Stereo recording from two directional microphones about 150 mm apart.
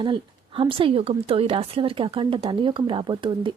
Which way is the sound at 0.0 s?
35° right (ahead or behind).